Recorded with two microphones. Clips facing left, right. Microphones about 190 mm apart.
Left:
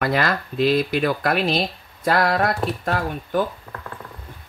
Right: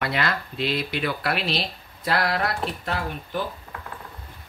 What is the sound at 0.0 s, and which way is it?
Speech, 45° left (ahead or behind).